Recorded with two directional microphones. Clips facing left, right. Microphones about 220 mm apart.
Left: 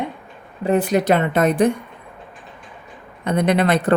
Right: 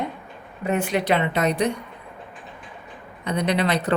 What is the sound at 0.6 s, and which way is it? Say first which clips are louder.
Speech: left 6 dB; 35° left (ahead or behind).